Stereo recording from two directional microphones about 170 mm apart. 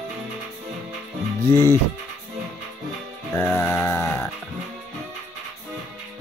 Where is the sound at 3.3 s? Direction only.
15° left (ahead or behind).